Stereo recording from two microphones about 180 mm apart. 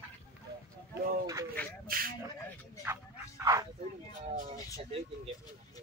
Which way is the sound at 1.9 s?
55° right (ahead or behind).